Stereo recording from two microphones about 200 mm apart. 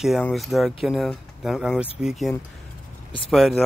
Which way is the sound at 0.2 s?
Centre (ahead or behind).